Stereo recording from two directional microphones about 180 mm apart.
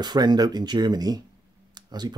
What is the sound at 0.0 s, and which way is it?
Speech, 25° right (ahead or behind).